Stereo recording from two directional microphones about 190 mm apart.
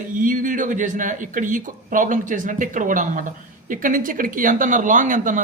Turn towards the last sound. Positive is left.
turn(degrees=-45)  # may be behind; listen again after turning